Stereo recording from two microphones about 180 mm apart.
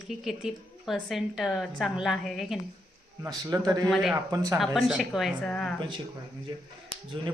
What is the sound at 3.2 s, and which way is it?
Speech, 20° right (ahead or behind).